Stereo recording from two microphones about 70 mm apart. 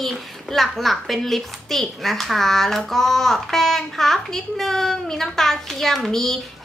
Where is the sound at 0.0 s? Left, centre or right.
Centre.